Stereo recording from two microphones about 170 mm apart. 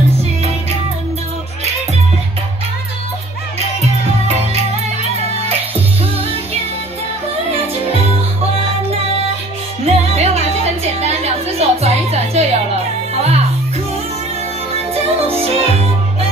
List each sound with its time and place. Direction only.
7.6 s music: 35° right (ahead or behind)
15.0 s music: 35° right (ahead or behind)